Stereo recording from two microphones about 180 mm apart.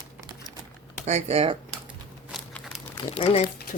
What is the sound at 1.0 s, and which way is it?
Speech, 35° right (ahead or behind).